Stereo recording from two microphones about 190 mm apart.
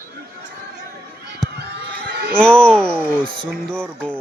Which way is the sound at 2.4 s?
5° left (ahead or behind).